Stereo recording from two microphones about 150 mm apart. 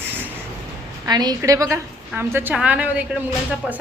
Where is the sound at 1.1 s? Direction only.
25° right (ahead or behind).